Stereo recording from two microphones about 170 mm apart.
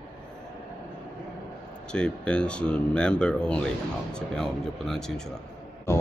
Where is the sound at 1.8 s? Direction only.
5° left (ahead or behind).